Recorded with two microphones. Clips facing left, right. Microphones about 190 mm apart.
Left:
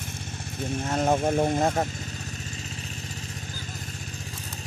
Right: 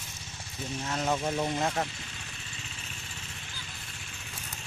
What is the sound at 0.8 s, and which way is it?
Speech, 50° left (ahead or behind).